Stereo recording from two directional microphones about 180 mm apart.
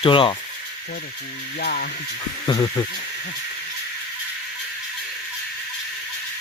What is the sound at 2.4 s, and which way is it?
Speech, 25° left (ahead or behind).